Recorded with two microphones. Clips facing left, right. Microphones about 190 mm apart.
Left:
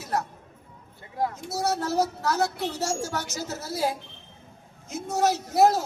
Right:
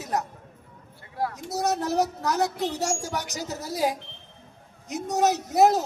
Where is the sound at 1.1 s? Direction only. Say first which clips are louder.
Left 1 dB; 20° left (ahead or behind).